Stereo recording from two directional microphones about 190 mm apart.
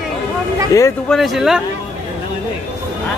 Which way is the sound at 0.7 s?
15° left (ahead or behind).